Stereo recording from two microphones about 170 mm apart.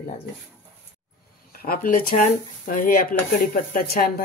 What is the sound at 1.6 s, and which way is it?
Speech, 60° left (ahead or behind).